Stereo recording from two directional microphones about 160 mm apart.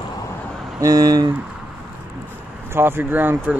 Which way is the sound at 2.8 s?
15° right (ahead or behind).